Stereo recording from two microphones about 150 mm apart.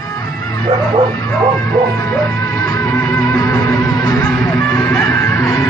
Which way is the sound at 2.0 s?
20° left (ahead or behind).